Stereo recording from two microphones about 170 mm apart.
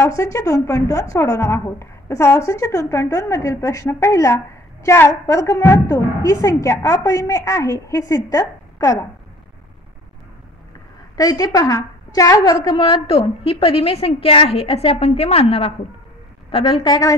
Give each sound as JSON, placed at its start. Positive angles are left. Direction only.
{"t": 0.0, "sound": "a woman's voice", "side_deg": 15}
{"t": 11.1, "sound": "a woman's voice", "side_deg": 20}